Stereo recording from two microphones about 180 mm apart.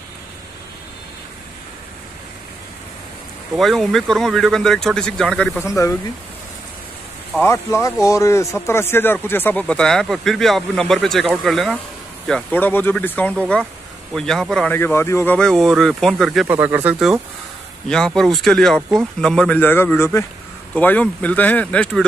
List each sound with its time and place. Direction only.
3.5 s speech: centre (ahead or behind)
5.7 s speech: 15° left (ahead or behind)
7.3 s speech: 15° left (ahead or behind)
16.4 s speech: 10° right (ahead or behind); by 22.0 s 5° left (ahead or behind)